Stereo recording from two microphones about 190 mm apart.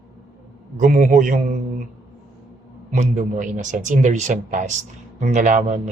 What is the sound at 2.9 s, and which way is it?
Speech, 40° right (ahead or behind).